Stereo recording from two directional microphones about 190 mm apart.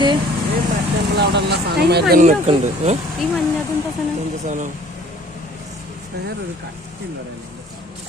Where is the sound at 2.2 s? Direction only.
35° right (ahead or behind).